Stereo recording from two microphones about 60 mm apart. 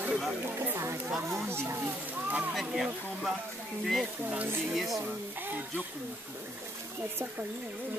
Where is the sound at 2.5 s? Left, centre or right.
Centre.